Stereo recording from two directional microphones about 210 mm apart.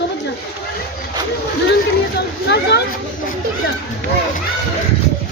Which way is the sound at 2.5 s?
55° left (ahead or behind).